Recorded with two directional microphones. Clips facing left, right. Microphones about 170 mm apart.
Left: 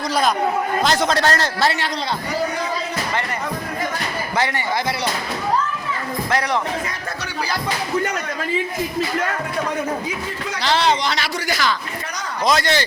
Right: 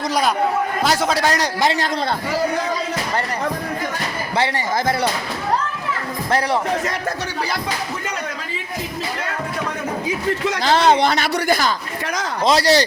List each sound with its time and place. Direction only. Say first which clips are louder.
0.1 s a man's voice: even; 10° right (ahead or behind)
10.6 s speech: right 3 dB; 50° right (ahead or behind)
12.5 s speech: right 3 dB; 35° right (ahead or behind)